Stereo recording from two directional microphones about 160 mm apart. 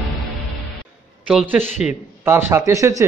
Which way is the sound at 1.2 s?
5° right (ahead or behind).